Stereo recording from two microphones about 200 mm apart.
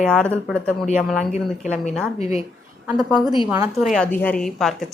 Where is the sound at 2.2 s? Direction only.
30° left (ahead or behind).